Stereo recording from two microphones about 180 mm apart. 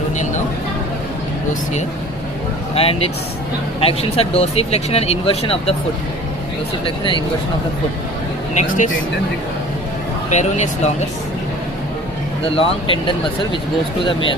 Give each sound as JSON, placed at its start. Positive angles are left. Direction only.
{"t": 2.8, "sound": "speech", "side_deg": 35}
{"t": 6.8, "sound": "speech", "side_deg": 25}
{"t": 8.5, "sound": "speech", "side_deg": 45}
{"t": 10.2, "sound": "speech", "side_deg": 40}
{"t": 12.5, "sound": "speech", "side_deg": 30}